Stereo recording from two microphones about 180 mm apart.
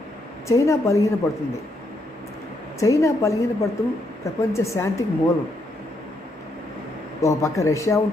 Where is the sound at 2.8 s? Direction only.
20° left (ahead or behind).